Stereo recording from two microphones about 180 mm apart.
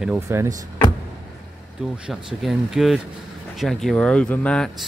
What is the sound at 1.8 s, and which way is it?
Speech, 5° right (ahead or behind).